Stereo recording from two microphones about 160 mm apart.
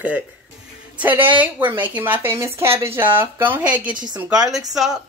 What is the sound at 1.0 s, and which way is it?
Speech, 10° right (ahead or behind).